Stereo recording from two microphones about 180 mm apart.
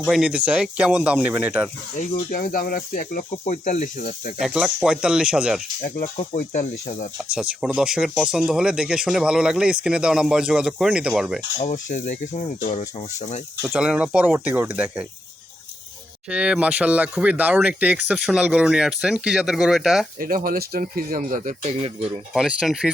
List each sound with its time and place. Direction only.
0.0 s speech: centre (ahead or behind)
2.0 s speech: 50° left (ahead or behind)
4.4 s speech: 5° right (ahead or behind)
6.1 s speech: 40° left (ahead or behind)
7.3 s speech: 5° right (ahead or behind)
11.5 s speech: 45° left (ahead or behind)
13.6 s speech: 10° right (ahead or behind)
16.3 s speech: 5° right (ahead or behind)
20.1 s speech: 55° right (ahead or behind); by 22.1 s 35° right (ahead or behind)
22.3 s speech: centre (ahead or behind)